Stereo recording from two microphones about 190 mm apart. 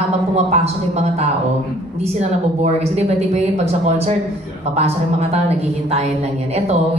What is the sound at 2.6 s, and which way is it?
Speech, 35° right (ahead or behind).